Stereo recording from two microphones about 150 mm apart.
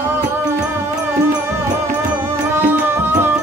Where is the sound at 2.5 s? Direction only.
15° right (ahead or behind).